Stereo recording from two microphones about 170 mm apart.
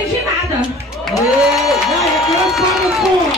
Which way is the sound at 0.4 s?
15° right (ahead or behind).